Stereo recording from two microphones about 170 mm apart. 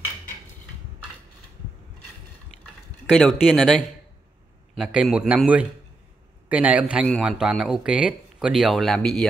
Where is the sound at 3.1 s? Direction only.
Centre (ahead or behind).